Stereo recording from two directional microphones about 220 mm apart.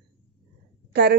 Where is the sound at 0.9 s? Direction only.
45° right (ahead or behind).